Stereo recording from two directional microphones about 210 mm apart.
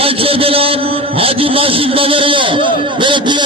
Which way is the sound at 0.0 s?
25° right (ahead or behind).